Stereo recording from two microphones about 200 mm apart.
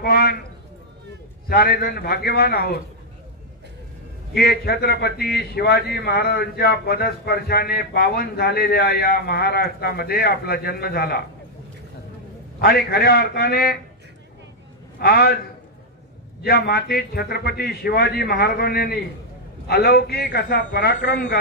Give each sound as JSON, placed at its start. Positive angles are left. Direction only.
{"t": 0.0, "sound": "speech", "side_deg": 50}
{"t": 1.5, "sound": "a man's voice", "side_deg": 50}
{"t": 4.3, "sound": "a man's voice", "side_deg": 50}
{"t": 12.5, "sound": "a man's voice", "side_deg": 50}
{"t": 15.0, "sound": "a man's voice", "side_deg": 50}
{"t": 16.4, "sound": "a man's voice", "side_deg": 50}